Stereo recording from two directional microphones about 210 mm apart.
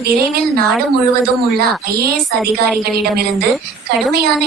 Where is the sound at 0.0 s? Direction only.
45° right (ahead or behind).